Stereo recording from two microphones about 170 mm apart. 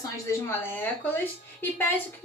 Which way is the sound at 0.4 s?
10° left (ahead or behind).